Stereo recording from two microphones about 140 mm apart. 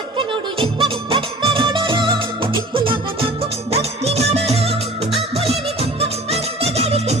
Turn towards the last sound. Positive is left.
turn(degrees=-45)  # may be behind; listen again after turning